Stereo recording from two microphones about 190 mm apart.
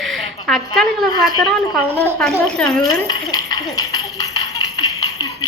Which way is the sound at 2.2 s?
5° left (ahead or behind).